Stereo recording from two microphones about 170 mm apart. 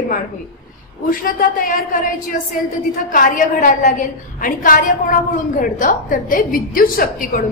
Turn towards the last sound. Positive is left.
turn(degrees=60)  # may be behind; listen again after turning